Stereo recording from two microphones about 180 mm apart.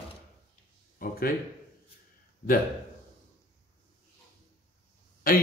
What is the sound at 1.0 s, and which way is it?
Speech, 55° left (ahead or behind).